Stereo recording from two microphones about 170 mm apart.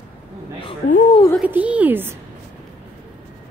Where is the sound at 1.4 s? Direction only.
10° right (ahead or behind).